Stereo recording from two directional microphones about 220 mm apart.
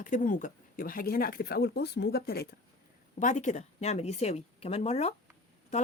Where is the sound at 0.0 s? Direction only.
35° left (ahead or behind).